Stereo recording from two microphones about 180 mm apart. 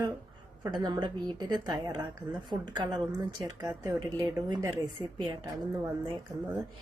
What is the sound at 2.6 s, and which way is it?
Speech, 25° right (ahead or behind).